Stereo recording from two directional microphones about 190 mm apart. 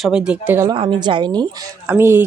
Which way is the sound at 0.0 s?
5° right (ahead or behind).